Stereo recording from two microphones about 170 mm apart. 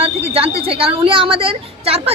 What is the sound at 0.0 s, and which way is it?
Speech, 35° right (ahead or behind).